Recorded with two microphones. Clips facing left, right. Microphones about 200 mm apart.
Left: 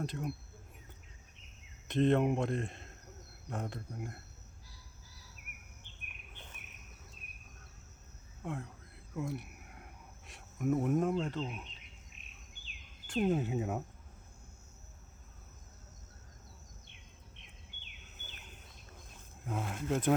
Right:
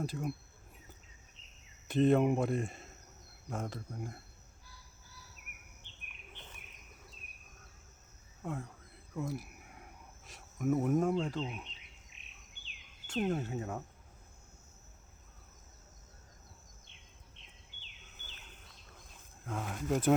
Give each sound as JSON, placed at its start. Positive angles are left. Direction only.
{"t": 0.0, "sound": "speech", "side_deg": 0}
{"t": 1.9, "sound": "speech", "side_deg": -5}
{"t": 8.4, "sound": "speech", "side_deg": 0}
{"t": 9.1, "sound": "cricket", "side_deg": 0}
{"t": 13.1, "sound": "speech", "side_deg": 5}
{"t": 17.3, "sound": "a sound", "side_deg": 60}
{"t": 19.5, "sound": "speech", "side_deg": 5}